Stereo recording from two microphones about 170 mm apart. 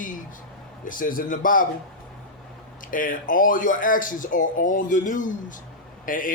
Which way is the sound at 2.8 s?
55° left (ahead or behind).